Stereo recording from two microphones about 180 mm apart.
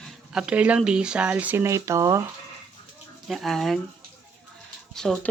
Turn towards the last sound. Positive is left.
turn(degrees=5)  # may be behind; listen again after turning